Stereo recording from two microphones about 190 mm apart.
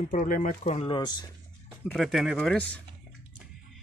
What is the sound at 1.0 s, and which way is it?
Speech, 20° left (ahead or behind).